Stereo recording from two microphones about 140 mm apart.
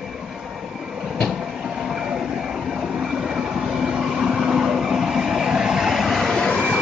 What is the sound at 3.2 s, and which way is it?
Vehicle, 5° right (ahead or behind).